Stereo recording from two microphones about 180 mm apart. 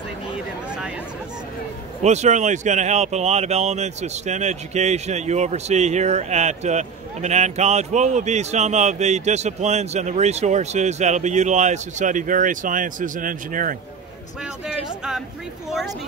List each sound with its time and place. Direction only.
2.0 s speech: 40° right (ahead or behind)
14.7 s speech: 5° right (ahead or behind)